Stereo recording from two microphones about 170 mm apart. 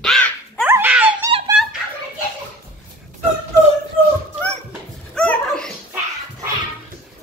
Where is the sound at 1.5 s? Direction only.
5° right (ahead or behind).